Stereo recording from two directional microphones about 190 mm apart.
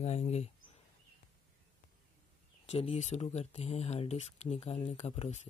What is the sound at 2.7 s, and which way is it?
Speech, 30° left (ahead or behind).